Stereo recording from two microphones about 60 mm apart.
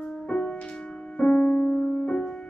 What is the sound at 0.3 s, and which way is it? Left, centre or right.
Music, centre.